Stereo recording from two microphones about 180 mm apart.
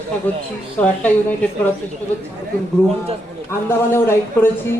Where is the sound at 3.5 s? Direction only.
15° left (ahead or behind).